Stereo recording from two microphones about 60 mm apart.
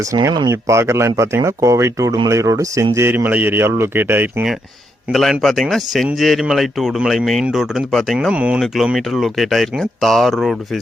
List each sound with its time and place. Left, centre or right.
0.0 s speech: right
3.2 s speech: right
3.5 s speech: right
5.1 s speech: centre
7.9 s speech: centre
8.3 s speech: right
8.5 s speech: centre